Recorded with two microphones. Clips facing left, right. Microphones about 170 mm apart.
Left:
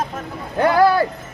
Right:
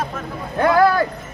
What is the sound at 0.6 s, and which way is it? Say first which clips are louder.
Speech: even; 10° left (ahead or behind).